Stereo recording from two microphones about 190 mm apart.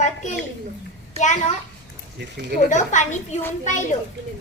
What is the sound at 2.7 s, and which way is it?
Speech, 40° left (ahead or behind).